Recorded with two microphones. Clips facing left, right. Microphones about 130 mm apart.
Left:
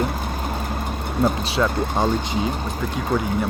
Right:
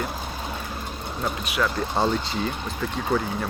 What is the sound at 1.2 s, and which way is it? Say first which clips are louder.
Speech: left 7 dB; 30° left (ahead or behind).